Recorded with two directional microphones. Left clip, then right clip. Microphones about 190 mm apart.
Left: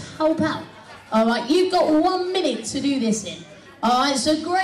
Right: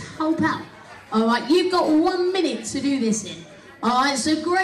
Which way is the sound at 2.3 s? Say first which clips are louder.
Left 1 dB; 45° left (ahead or behind).